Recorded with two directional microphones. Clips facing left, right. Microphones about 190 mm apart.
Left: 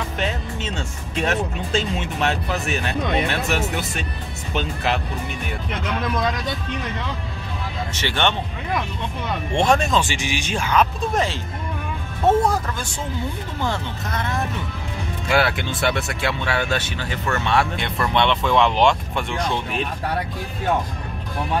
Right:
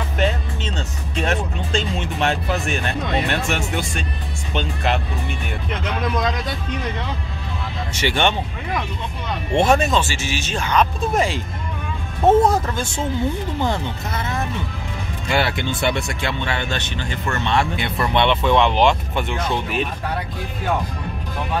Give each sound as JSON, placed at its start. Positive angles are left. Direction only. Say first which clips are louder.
{"t": 0.7, "sound": "speech", "louder": "right 1 dB", "side_deg": 5}
{"t": 7.9, "sound": "speech", "louder": "right 3 dB", "side_deg": -10}
{"t": 9.6, "sound": "speech", "louder": "right 2 dB", "side_deg": -5}
{"t": 10.0, "sound": "speech", "louder": "even", "side_deg": 15}
{"t": 11.1, "sound": "speech", "louder": "right 3 dB", "side_deg": -15}
{"t": 12.3, "sound": "speech", "louder": "right 3 dB", "side_deg": -25}
{"t": 14.1, "sound": "speech", "louder": "left 1 dB", "side_deg": -5}